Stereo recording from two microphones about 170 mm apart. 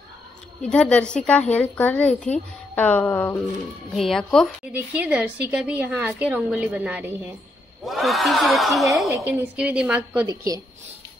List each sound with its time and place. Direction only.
0.6 s speech: 5° left (ahead or behind)
3.9 s speech: centre (ahead or behind)
4.7 s a woman's voice: 10° right (ahead or behind)
10.2 s a woman's voice: 20° right (ahead or behind)